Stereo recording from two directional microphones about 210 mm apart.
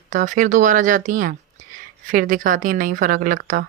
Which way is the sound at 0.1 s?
35° right (ahead or behind).